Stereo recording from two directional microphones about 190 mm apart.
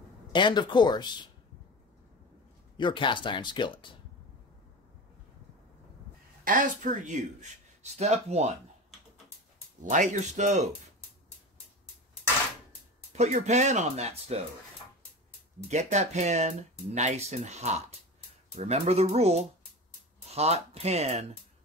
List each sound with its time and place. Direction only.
0.3 s speech: 25° left (ahead or behind)
2.8 s speech: 25° left (ahead or behind)
6.4 s speech: 45° right (ahead or behind)
9.8 s speech: 40° right (ahead or behind)
13.1 s speech: 35° right (ahead or behind)
15.7 s speech: 35° right (ahead or behind)